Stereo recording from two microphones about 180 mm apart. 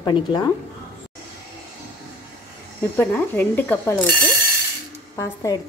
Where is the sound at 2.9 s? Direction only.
10° left (ahead or behind).